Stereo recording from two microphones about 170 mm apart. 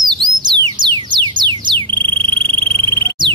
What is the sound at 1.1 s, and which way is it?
Frog, 25° right (ahead or behind).